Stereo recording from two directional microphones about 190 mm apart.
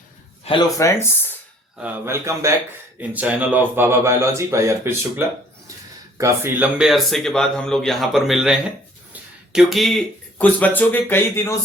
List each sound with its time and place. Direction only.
0.5 s speech: 30° left (ahead or behind)
0.8 s speech: 15° left (ahead or behind)
1.8 s a man's voice: 10° right (ahead or behind); by 11.5 s 10° left (ahead or behind)